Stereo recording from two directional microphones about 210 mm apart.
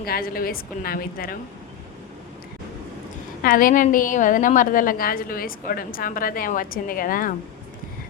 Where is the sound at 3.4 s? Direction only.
40° left (ahead or behind).